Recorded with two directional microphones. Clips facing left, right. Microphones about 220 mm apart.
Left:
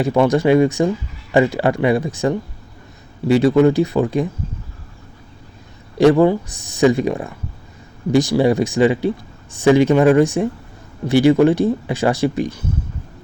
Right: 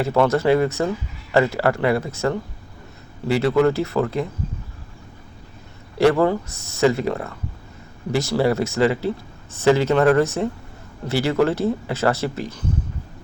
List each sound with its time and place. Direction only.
0.0 s speech: 15° left (ahead or behind)
6.0 s speech: 15° left (ahead or behind)